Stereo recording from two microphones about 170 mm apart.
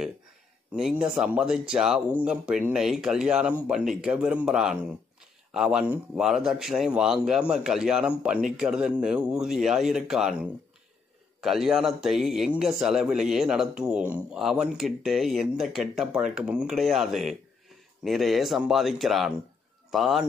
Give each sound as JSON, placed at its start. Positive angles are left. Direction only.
{"t": 0.7, "sound": "a man's voice", "side_deg": -5}